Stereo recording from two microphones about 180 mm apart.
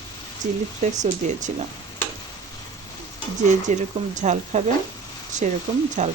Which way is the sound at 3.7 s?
45° right (ahead or behind).